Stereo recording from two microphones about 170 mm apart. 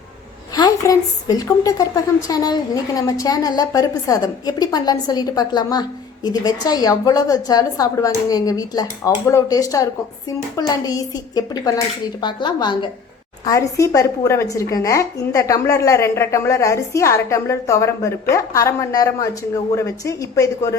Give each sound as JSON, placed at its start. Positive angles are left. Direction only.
{"t": 0.5, "sound": "a woman's voice", "side_deg": 25}